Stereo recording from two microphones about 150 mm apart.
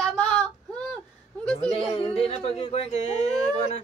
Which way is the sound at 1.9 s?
40° left (ahead or behind).